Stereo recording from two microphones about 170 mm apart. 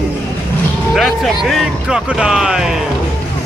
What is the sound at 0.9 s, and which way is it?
Speech, centre (ahead or behind).